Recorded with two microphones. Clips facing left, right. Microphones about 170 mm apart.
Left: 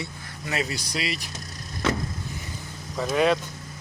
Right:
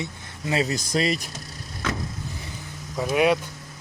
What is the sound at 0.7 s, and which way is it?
Speech, 45° right (ahead or behind).